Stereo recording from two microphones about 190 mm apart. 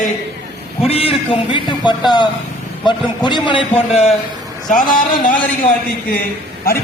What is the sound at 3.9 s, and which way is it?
Speech, 35° left (ahead or behind).